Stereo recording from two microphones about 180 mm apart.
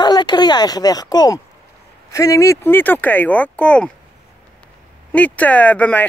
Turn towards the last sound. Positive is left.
turn(degrees=10)  # may be behind; listen again after turning